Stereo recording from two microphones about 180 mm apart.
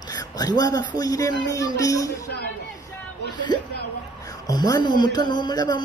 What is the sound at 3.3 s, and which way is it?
Speech, 25° left (ahead or behind).